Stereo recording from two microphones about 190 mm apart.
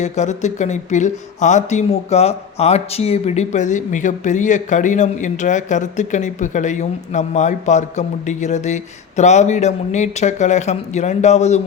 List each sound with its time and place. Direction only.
0.0 s speech: 40° left (ahead or behind)